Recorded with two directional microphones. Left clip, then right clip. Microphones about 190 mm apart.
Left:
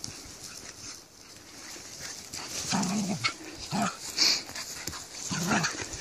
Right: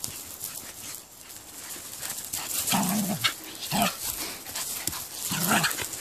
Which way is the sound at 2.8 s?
15° right (ahead or behind).